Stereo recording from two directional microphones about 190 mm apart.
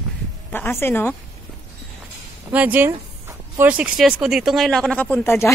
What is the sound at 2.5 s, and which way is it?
Speech, 10° right (ahead or behind).